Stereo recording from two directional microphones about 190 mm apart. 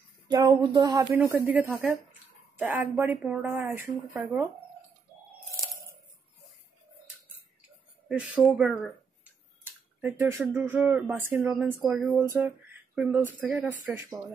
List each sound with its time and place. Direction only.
0.3 s speech: 20° right (ahead or behind)
1.2 s speech: 10° right (ahead or behind)
8.1 s speech: 5° right (ahead or behind)
10.0 s speech: 10° right (ahead or behind)